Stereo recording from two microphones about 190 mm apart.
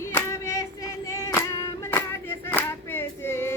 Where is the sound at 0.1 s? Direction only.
15° left (ahead or behind).